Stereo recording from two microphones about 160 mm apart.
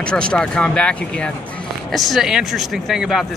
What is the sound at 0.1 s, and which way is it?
Speech, 5° left (ahead or behind).